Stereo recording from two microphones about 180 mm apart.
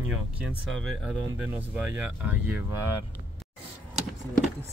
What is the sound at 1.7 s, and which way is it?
Speech, 10° right (ahead or behind).